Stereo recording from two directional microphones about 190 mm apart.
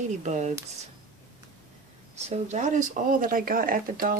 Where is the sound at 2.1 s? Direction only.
35° right (ahead or behind).